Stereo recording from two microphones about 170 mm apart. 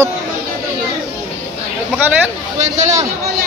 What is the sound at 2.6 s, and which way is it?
Speech, 45° right (ahead or behind).